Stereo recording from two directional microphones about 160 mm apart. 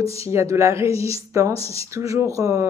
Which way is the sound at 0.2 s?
20° right (ahead or behind).